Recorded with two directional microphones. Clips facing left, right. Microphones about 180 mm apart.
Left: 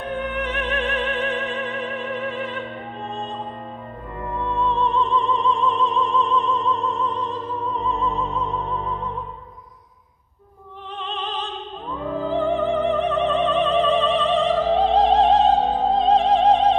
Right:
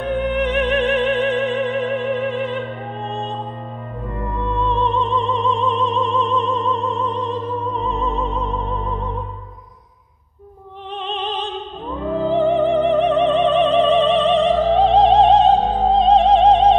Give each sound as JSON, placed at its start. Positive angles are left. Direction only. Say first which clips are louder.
{"t": 0.2, "sound": "music", "louder": "right 7 dB", "side_deg": -20}
{"t": 4.6, "sound": "opera", "louder": "right 1 dB", "side_deg": -20}
{"t": 11.0, "sound": "opera", "louder": "right 4 dB", "side_deg": -20}
{"t": 15.9, "sound": "music", "louder": "right 5 dB", "side_deg": -20}